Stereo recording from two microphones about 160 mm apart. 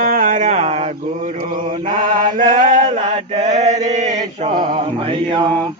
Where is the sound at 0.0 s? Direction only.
55° right (ahead or behind); by 0.9 s 40° right (ahead or behind).